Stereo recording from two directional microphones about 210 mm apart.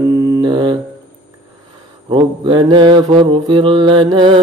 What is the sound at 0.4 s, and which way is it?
Mantra, 20° right (ahead or behind).